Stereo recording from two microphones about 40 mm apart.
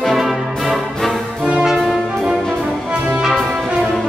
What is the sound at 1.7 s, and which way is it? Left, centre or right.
Music, centre.